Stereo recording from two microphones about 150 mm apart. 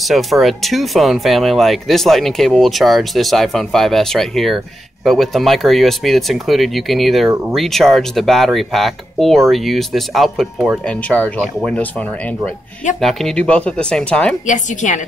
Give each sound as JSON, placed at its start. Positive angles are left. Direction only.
{"t": 0.0, "sound": "speech", "side_deg": 0}
{"t": 13.0, "sound": "speech", "side_deg": 5}
{"t": 14.4, "sound": "a woman's voice", "side_deg": 55}